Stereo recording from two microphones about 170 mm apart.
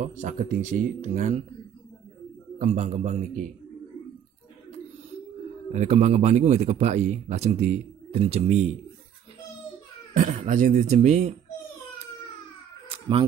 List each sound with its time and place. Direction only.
0.0 s speech: 45° right (ahead or behind)
2.6 s speech: 40° right (ahead or behind)
5.7 s a man's voice: 45° right (ahead or behind)
10.1 s speech: 50° right (ahead or behind)
12.8 s a sound: 30° right (ahead or behind)